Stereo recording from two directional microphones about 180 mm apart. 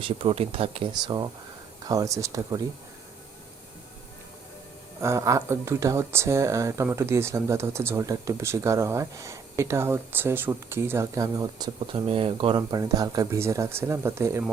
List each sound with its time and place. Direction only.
0.0 s speech: 30° right (ahead or behind)
4.9 s speech: 15° right (ahead or behind)